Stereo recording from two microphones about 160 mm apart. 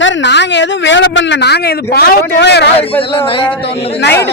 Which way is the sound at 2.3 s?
90° left.